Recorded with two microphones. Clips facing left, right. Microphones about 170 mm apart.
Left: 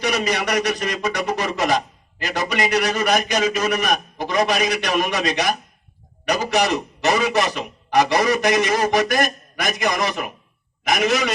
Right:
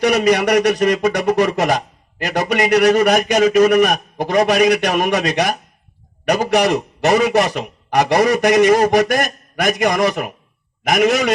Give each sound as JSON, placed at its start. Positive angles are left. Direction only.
{"t": 0.0, "sound": "speech", "side_deg": -50}